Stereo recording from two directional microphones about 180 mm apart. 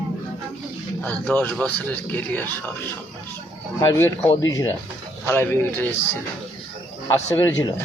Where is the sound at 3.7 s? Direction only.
15° left (ahead or behind).